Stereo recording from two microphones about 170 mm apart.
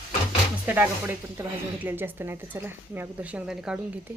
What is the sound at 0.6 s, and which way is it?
Speech, 10° right (ahead or behind).